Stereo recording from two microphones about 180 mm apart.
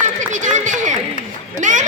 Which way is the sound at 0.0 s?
45° right (ahead or behind).